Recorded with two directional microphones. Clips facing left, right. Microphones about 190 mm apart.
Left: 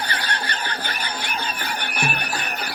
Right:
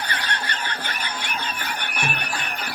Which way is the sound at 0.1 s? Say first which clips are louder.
Left 1 dB; 35° left (ahead or behind).